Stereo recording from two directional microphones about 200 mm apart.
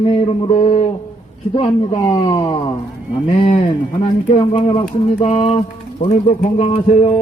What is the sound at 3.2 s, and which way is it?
A man's voice, 30° left (ahead or behind).